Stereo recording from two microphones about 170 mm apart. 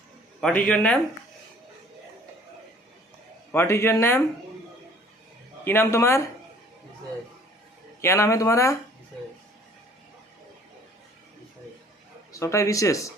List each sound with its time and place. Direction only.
0.4 s a man's voice: 5° left (ahead or behind)
3.5 s a man's voice: 15° left (ahead or behind)
5.6 s a man's voice: 15° left (ahead or behind)
8.0 s a man's voice: 15° left (ahead or behind)
12.3 s speech: 15° left (ahead or behind)